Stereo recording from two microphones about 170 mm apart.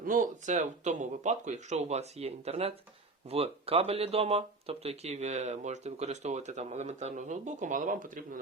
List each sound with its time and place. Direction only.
0.0 s speech: 55° right (ahead or behind)